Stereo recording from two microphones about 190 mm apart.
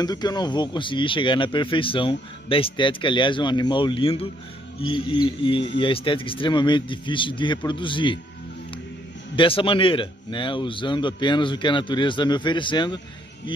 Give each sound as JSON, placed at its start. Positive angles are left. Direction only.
{"t": 0.0, "sound": "a man's voice", "side_deg": 20}
{"t": 9.3, "sound": "a man's voice", "side_deg": 25}